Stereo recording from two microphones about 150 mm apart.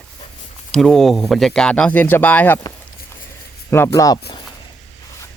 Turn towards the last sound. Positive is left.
turn(degrees=20)  # may be behind; listen again after turning